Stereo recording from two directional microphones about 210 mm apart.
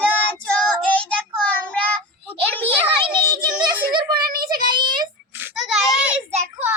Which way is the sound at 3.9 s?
20° right (ahead or behind).